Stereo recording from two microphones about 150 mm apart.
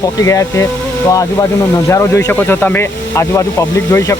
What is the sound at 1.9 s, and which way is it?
Speech, 20° left (ahead or behind).